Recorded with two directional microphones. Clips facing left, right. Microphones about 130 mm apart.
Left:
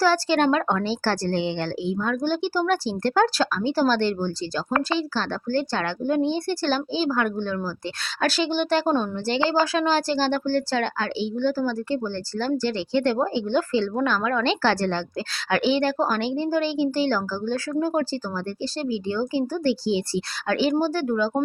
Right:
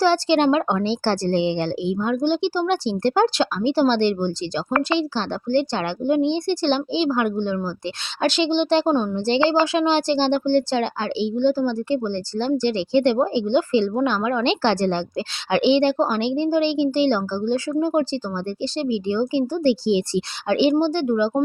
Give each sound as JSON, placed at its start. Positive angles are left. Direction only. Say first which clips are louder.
{"t": 0.0, "sound": "a woman's voice", "louder": "right 3 dB", "side_deg": -25}
{"t": 19.4, "sound": "a woman's voice", "louder": "right 4 dB", "side_deg": -25}